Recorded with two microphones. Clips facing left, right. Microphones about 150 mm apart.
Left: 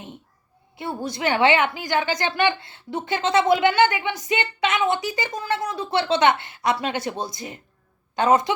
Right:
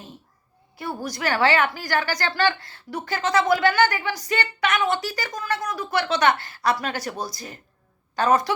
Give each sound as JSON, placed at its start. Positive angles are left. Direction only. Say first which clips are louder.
{"t": 0.8, "sound": "a woman's voice", "louder": "left 2 dB", "side_deg": 25}